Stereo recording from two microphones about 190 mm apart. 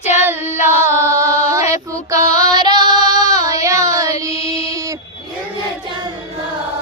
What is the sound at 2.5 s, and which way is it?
Female singing, 20° right (ahead or behind).